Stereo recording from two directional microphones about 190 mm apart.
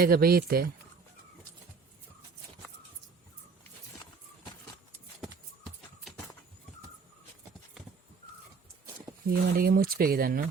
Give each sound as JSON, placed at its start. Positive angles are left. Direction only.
{"t": 0.0, "sound": "speech", "side_deg": -50}
{"t": 9.2, "sound": "speech", "side_deg": -50}